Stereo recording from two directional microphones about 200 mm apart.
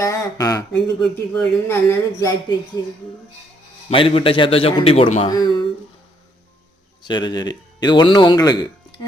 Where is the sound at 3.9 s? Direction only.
30° left (ahead or behind).